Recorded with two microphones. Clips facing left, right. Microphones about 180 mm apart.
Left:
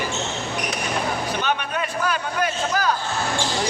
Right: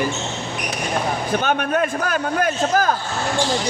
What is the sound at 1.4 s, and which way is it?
A man's voice, 50° right (ahead or behind).